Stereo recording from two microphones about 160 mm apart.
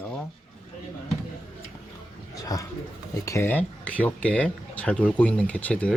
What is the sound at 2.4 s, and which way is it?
A man's voice, 20° left (ahead or behind).